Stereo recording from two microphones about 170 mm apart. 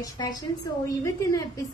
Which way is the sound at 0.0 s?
25° left (ahead or behind).